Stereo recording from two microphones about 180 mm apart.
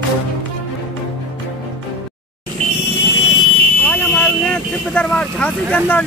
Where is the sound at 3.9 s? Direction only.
5° left (ahead or behind).